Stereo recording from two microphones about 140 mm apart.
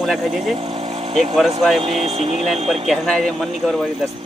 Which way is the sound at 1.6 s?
Centre (ahead or behind).